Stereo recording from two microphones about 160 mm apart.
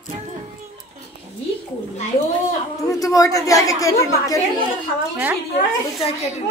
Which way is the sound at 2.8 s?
20° left (ahead or behind).